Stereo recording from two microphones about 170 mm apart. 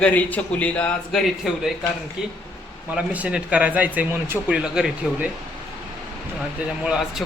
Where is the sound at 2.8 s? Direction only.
10° right (ahead or behind).